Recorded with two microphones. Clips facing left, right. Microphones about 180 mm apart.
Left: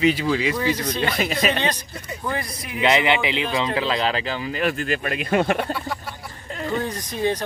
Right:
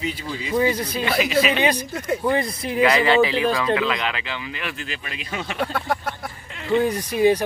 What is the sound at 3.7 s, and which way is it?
Speech, 30° left (ahead or behind).